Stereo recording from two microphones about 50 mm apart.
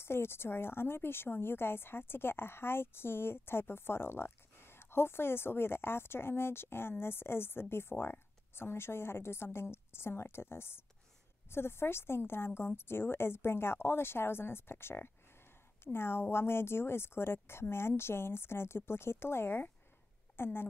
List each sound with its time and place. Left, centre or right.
0.0 s a woman's voice: left